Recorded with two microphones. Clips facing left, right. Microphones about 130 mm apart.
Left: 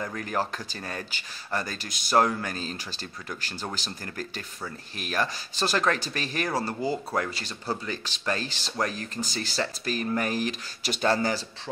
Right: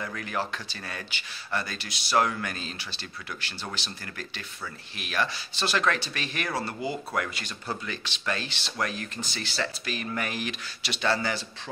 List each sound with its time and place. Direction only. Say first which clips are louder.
0.0 s speech: left 2 dB; 35° left (ahead or behind)